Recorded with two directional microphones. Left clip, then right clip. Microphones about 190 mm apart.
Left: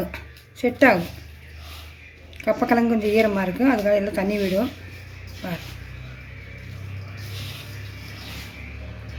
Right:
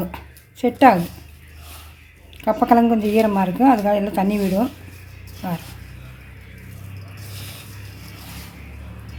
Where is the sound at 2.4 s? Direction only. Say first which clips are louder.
Right 4 dB; 40° right (ahead or behind).